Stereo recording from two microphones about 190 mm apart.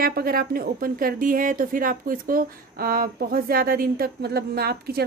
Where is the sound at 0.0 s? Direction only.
50° right (ahead or behind).